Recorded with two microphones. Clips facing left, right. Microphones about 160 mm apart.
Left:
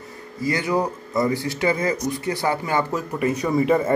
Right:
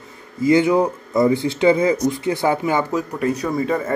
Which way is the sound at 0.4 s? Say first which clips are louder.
Right 7 dB; 20° right (ahead or behind).